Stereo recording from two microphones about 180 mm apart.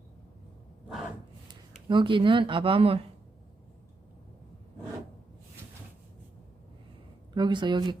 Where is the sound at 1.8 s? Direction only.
25° right (ahead or behind).